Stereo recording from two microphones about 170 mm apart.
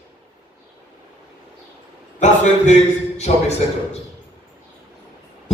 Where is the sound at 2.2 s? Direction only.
45° left (ahead or behind).